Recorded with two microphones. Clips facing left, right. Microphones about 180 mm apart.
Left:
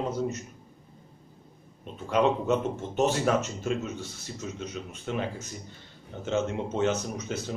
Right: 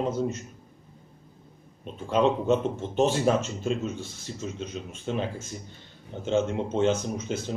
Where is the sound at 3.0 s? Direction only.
30° right (ahead or behind).